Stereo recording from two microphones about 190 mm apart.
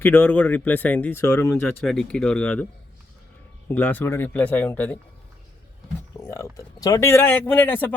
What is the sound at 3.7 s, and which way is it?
Speech, 10° left (ahead or behind).